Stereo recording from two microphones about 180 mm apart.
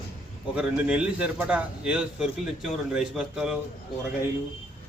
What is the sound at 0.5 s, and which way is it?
A man's voice, 5° right (ahead or behind).